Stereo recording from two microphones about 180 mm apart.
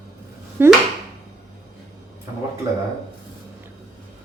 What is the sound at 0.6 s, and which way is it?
Speech, 10° right (ahead or behind).